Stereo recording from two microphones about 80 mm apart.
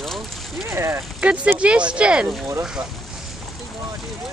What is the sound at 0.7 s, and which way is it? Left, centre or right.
Speech, right.